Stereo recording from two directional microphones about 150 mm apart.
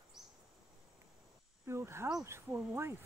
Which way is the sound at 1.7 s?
15° right (ahead or behind).